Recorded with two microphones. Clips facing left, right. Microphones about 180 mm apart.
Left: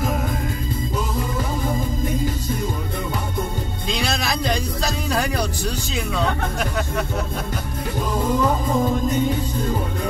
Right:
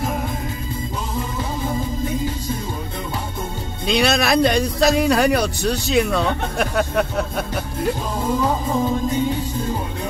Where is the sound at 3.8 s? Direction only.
70° right (ahead or behind).